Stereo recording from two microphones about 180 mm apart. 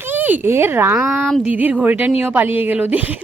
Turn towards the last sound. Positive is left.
turn(degrees=-10)  # may be behind; listen again after turning